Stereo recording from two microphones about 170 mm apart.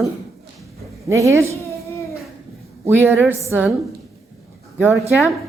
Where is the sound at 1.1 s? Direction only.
15° right (ahead or behind).